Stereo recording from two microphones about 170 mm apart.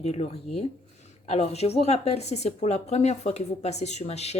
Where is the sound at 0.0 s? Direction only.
40° left (ahead or behind).